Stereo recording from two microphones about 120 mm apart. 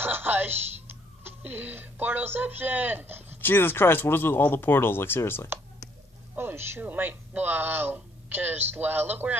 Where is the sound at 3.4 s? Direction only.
15° left (ahead or behind).